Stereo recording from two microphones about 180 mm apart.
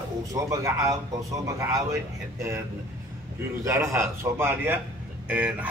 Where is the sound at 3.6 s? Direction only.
15° right (ahead or behind).